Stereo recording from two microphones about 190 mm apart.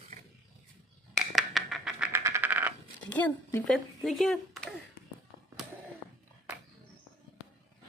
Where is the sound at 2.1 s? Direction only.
15° right (ahead or behind).